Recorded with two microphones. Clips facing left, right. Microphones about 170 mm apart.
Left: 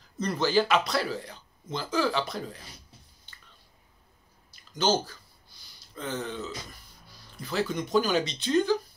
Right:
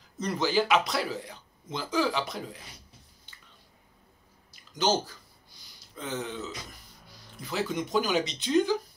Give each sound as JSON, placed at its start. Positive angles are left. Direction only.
{"t": 0.2, "sound": "speech", "side_deg": -15}
{"t": 4.7, "sound": "speech", "side_deg": -15}
{"t": 7.3, "sound": "speech", "side_deg": -15}